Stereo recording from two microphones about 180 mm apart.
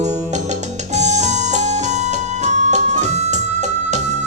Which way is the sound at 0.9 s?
40° right (ahead or behind).